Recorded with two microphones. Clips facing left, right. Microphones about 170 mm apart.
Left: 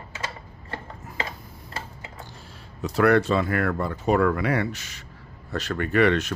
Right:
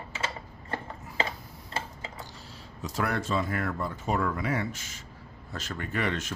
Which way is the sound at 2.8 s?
65° left (ahead or behind).